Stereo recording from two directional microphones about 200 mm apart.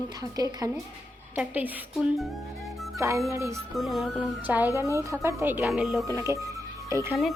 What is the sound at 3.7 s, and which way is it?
Speech, centre (ahead or behind).